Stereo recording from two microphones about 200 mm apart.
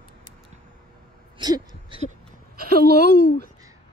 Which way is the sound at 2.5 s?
50° right (ahead or behind).